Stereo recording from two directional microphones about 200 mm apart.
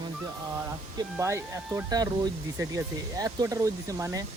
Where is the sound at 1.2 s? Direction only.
15° right (ahead or behind).